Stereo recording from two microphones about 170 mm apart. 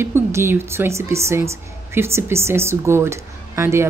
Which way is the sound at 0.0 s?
15° right (ahead or behind).